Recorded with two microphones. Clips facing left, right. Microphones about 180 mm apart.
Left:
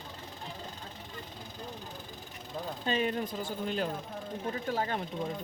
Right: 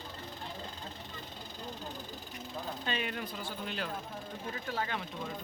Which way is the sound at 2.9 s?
35° left (ahead or behind).